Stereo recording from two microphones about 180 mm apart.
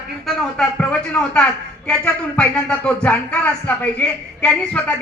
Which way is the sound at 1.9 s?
5° left (ahead or behind).